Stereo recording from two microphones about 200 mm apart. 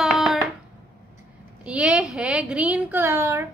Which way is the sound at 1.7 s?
5° right (ahead or behind).